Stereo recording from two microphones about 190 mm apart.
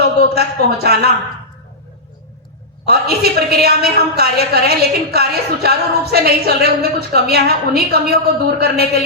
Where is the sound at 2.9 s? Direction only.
55° right (ahead or behind).